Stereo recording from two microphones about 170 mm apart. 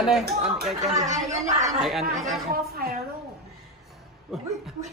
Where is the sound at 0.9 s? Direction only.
45° right (ahead or behind).